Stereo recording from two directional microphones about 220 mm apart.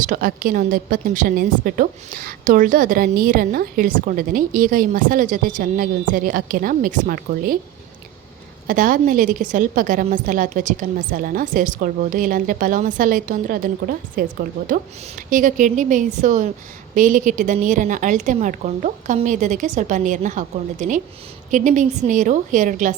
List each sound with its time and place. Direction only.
0.0 s a woman's voice: 40° right (ahead or behind)
8.6 s a woman's voice: 40° right (ahead or behind)
15.3 s a woman's voice: 35° right (ahead or behind)